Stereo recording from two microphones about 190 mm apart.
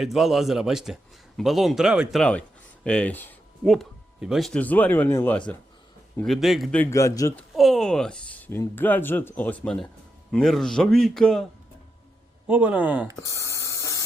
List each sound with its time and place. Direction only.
0.0 s a man's voice: centre (ahead or behind)
6.1 s a man's voice: centre (ahead or behind)
6.9 s speech: 15° left (ahead or behind)
7.3 s a man's voice: centre (ahead or behind)
12.5 s speech: 5° right (ahead or behind)
13.3 s spray: 15° left (ahead or behind)